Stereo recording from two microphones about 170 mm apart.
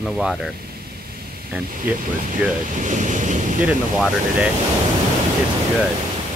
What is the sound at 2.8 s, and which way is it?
Waves, 45° right (ahead or behind).